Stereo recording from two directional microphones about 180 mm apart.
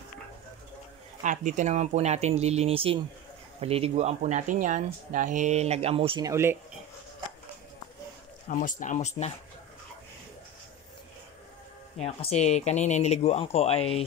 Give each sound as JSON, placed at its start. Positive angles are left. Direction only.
{"t": 1.2, "sound": "speech", "side_deg": -45}
{"t": 6.3, "sound": "speech", "side_deg": -15}
{"t": 8.5, "sound": "speech", "side_deg": 45}
{"t": 12.0, "sound": "speech", "side_deg": 35}